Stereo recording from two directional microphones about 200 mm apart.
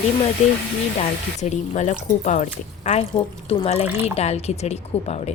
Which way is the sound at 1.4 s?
35° left (ahead or behind).